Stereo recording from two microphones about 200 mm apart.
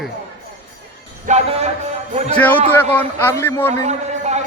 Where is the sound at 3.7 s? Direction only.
35° right (ahead or behind).